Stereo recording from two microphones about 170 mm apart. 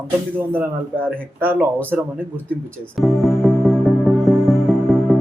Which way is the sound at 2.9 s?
Centre (ahead or behind).